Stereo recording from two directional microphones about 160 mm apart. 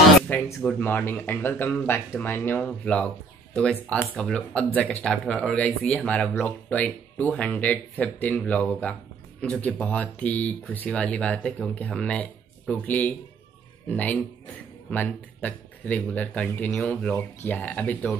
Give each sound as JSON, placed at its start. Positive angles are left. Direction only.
{"t": 0.6, "sound": "speech", "side_deg": 10}